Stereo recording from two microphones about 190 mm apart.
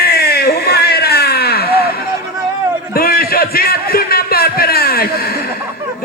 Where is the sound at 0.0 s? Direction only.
55° left (ahead or behind).